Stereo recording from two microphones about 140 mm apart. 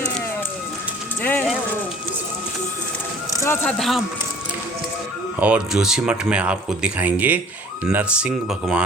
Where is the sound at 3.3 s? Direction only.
20° left (ahead or behind).